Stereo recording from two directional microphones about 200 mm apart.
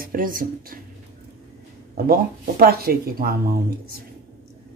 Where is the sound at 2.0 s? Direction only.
50° right (ahead or behind).